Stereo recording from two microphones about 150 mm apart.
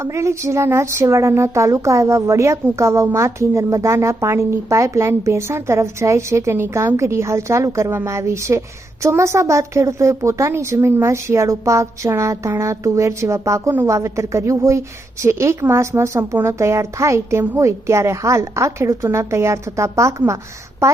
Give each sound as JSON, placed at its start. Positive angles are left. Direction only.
{"t": 0.0, "sound": "speech", "side_deg": -20}